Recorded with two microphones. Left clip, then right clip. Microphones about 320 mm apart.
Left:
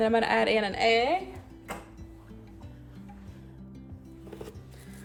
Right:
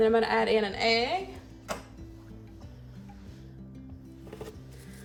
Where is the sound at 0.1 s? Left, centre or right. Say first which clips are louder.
Even; centre.